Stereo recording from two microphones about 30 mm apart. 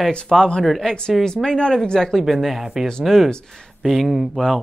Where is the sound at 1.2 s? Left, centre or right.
Centre.